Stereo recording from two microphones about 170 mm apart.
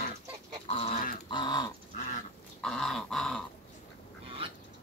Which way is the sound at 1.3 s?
25° left (ahead or behind).